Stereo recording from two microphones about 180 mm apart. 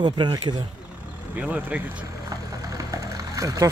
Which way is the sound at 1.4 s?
5° right (ahead or behind).